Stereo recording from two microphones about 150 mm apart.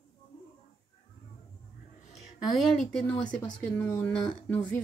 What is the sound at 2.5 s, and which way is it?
Speech, 5° left (ahead or behind).